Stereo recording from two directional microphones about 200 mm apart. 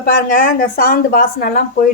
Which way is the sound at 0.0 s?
45° left (ahead or behind).